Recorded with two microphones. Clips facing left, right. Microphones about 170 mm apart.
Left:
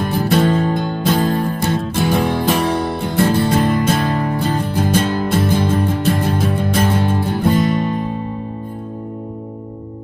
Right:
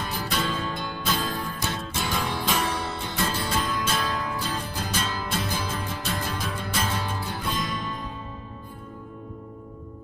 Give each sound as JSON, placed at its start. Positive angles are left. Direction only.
{"t": 0.0, "sound": "music", "side_deg": 55}